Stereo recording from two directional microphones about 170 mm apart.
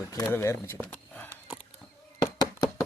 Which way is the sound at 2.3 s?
20° left (ahead or behind).